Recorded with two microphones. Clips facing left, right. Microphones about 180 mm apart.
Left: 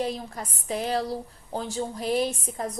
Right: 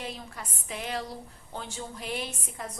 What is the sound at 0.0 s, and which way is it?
A woman's voice, 40° left (ahead or behind).